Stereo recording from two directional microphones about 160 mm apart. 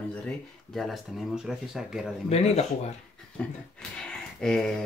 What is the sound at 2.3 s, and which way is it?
Speech, 40° left (ahead or behind).